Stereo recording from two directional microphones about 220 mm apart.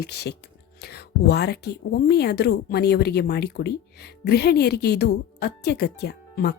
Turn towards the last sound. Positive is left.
turn(degrees=45)  # may be behind; listen again after turning